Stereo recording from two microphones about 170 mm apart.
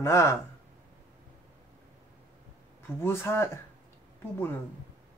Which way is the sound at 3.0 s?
15° left (ahead or behind).